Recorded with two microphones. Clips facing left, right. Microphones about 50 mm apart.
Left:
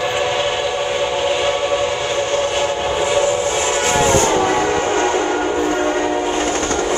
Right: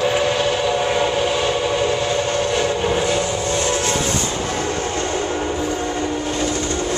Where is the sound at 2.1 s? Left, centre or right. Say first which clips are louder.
Left 1 dB; left.